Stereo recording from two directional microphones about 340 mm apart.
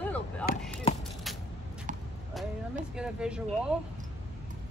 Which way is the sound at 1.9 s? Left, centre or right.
Right.